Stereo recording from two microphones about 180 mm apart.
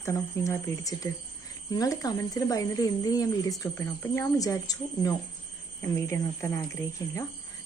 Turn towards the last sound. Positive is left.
turn(degrees=15)  # may be behind; listen again after turning